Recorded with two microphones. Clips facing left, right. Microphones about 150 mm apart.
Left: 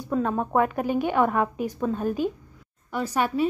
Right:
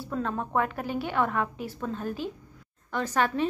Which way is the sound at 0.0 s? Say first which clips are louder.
Left 6 dB; 15° left (ahead or behind).